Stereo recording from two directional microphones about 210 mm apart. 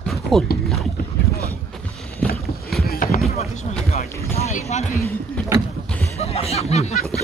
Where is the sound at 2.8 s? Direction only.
45° left (ahead or behind).